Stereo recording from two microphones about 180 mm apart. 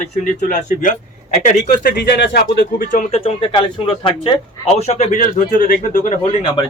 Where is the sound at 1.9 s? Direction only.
70° left (ahead or behind); by 3.2 s 45° left (ahead or behind).